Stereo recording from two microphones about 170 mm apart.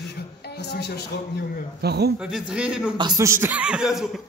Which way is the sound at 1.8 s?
70° right (ahead or behind).